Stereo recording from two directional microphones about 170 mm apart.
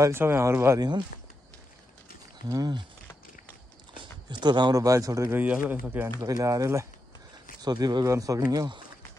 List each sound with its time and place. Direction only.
0.0 s speech: 15° right (ahead or behind)
2.5 s speech: 25° right (ahead or behind)
3.9 s speech: 25° right (ahead or behind)